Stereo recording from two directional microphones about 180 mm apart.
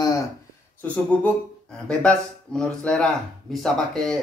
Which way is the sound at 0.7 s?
5° left (ahead or behind).